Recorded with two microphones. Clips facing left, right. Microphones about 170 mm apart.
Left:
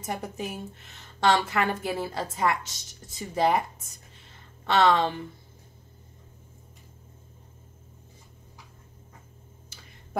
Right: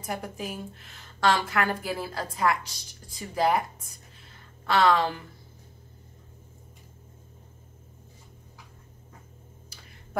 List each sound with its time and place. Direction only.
0.0 s a woman's voice: 25° left (ahead or behind)